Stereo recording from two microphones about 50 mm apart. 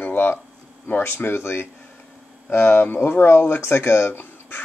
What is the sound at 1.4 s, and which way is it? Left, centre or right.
Speech, left.